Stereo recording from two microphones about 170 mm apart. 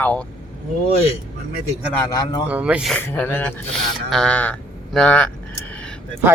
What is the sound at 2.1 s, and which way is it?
Speech, 20° left (ahead or behind).